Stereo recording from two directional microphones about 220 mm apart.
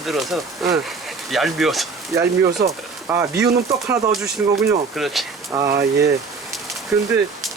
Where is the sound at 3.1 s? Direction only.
10° right (ahead or behind).